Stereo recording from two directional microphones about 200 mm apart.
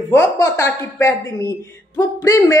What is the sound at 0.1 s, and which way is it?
Speech, 15° left (ahead or behind).